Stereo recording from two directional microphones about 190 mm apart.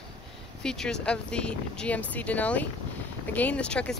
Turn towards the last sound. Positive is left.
turn(degrees=5)  # may be behind; listen again after turning